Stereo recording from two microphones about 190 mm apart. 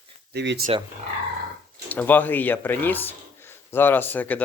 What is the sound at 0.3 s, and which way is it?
Speech, 65° right (ahead or behind).